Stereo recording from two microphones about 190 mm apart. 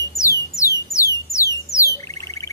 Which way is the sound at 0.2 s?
15° left (ahead or behind).